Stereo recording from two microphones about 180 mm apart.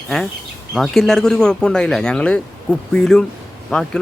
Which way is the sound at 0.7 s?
Centre (ahead or behind).